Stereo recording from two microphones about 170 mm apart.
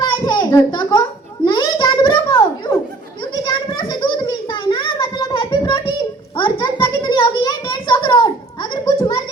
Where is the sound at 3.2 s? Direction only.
30° left (ahead or behind).